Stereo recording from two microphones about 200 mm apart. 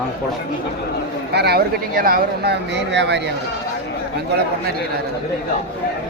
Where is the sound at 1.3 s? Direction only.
55° right (ahead or behind).